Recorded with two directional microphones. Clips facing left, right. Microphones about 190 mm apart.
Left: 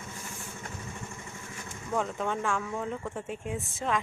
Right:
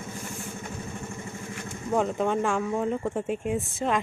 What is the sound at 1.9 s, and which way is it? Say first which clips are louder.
Speech: right 6 dB; 25° right (ahead or behind).